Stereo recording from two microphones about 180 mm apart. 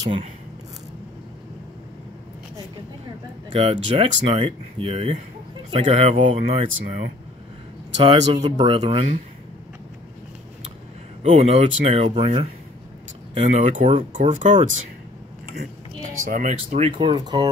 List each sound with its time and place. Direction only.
3.5 s speech: 30° right (ahead or behind)
11.2 s speech: 35° right (ahead or behind)
16.3 s speech: 45° right (ahead or behind)
16.5 s speech: 35° right (ahead or behind)